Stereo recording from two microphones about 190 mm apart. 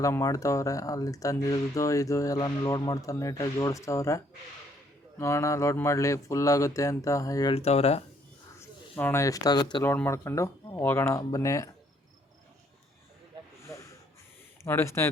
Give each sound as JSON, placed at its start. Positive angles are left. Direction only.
{"t": 0.0, "sound": "speech", "side_deg": 15}
{"t": 7.5, "sound": "speech", "side_deg": 30}
{"t": 8.5, "sound": "speech", "side_deg": 10}
{"t": 13.6, "sound": "snort", "side_deg": 15}
{"t": 14.6, "sound": "speech", "side_deg": 15}